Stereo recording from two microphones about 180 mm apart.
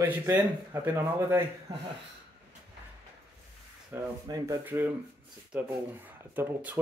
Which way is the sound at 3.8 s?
20° right (ahead or behind).